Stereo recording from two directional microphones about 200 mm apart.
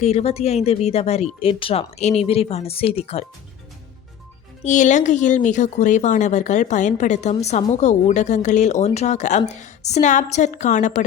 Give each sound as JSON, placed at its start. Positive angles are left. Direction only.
{"t": 0.0, "sound": "speech", "side_deg": 30}
{"t": 4.6, "sound": "speech", "side_deg": 40}